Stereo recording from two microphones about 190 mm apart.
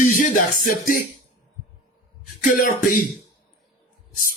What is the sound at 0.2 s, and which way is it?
Music, 45° left (ahead or behind).